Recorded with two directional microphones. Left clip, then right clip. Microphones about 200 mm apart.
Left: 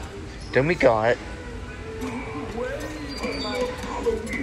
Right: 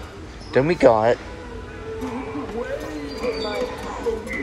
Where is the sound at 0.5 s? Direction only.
15° right (ahead or behind).